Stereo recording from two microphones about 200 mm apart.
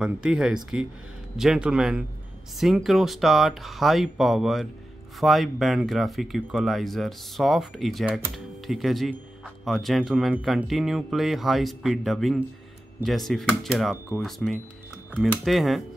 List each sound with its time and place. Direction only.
0.0 s speech: 5° right (ahead or behind)